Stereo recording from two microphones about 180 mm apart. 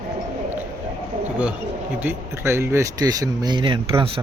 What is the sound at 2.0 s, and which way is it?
Speech, 15° right (ahead or behind).